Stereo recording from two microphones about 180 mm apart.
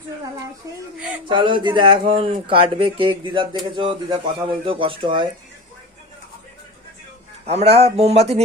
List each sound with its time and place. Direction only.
1.3 s speech: 25° right (ahead or behind)
7.4 s speech: 35° right (ahead or behind)